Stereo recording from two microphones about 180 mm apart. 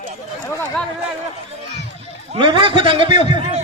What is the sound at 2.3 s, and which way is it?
A man's voice, 30° right (ahead or behind).